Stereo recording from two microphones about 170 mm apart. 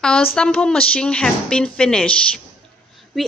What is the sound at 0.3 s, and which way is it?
A woman's voice, 5° left (ahead or behind).